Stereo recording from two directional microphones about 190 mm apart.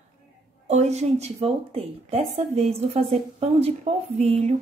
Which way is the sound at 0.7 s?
35° right (ahead or behind).